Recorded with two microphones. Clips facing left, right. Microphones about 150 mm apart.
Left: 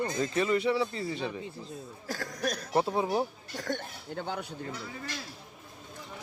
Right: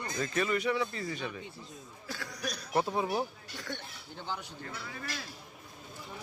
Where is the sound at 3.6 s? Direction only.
45° left (ahead or behind).